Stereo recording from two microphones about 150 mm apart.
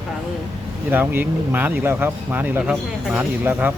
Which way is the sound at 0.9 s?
15° right (ahead or behind).